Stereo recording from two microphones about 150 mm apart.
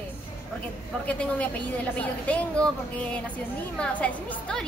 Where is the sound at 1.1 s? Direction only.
10° left (ahead or behind).